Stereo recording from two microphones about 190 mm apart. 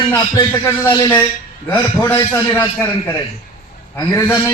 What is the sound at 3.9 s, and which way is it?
Speech, 20° left (ahead or behind).